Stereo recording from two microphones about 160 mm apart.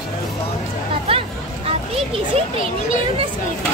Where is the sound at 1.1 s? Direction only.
35° right (ahead or behind).